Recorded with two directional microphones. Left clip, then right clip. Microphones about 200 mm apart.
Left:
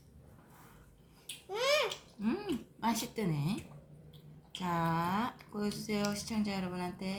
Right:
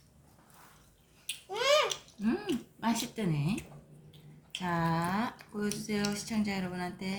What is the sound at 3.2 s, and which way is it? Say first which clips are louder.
Speech: right 2 dB; 20° left (ahead or behind).